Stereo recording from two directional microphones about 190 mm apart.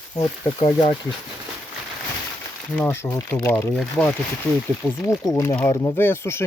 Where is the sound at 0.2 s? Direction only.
25° left (ahead or behind).